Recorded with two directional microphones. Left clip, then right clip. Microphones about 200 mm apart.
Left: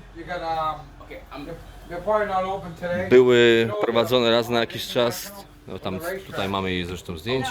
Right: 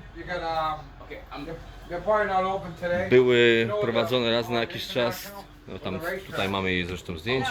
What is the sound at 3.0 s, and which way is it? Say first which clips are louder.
Speech: left 4 dB; 35° left (ahead or behind).